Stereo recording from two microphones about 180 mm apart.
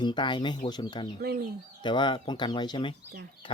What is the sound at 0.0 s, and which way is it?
Speech, 25° left (ahead or behind).